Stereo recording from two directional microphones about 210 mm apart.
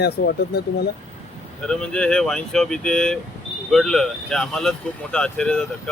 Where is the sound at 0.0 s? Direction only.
50° left (ahead or behind).